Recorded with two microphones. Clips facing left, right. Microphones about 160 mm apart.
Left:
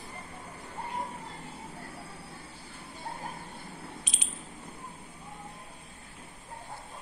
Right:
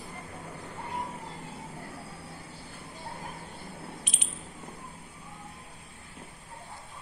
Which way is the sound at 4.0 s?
60° right (ahead or behind).